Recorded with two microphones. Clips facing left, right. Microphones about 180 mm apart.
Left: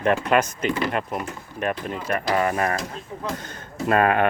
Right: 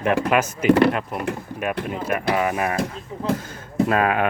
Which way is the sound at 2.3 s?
10° right (ahead or behind).